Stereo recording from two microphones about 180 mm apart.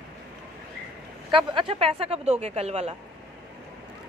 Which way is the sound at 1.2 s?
30° right (ahead or behind).